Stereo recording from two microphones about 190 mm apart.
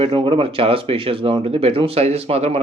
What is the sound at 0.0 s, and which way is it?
Speech, 30° right (ahead or behind).